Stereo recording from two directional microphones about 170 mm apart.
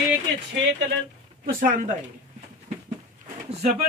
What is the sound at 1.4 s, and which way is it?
Speech, 55° right (ahead or behind).